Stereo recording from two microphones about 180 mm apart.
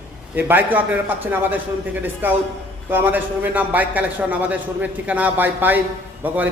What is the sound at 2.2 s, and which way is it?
A man's voice, 10° right (ahead or behind).